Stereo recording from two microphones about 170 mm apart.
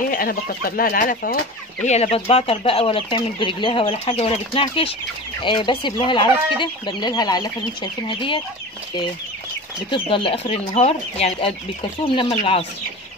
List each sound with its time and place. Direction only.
0.1 s speech: 60° left (ahead or behind)
1.9 s speech: 40° left (ahead or behind)
9.8 s speech: 30° left (ahead or behind)